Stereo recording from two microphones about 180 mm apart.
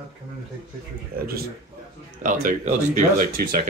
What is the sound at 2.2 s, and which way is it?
Speech, 45° right (ahead or behind).